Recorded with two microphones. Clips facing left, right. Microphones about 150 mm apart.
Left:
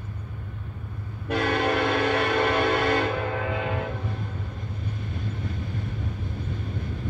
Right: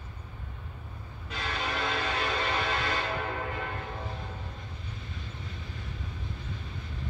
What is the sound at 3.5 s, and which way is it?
Music, 90° left.